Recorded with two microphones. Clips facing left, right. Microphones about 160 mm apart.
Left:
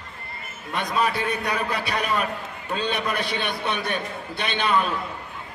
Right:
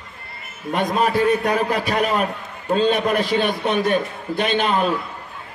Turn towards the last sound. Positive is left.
turn(degrees=-45)  # may be behind; listen again after turning